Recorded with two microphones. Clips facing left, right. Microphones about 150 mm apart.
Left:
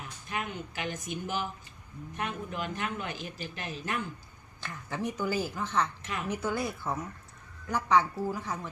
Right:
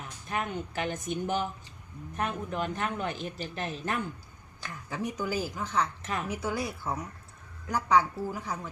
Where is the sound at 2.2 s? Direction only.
40° right (ahead or behind).